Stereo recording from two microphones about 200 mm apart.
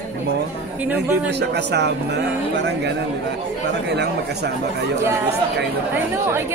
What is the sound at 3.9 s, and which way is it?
Speech, 55° right (ahead or behind).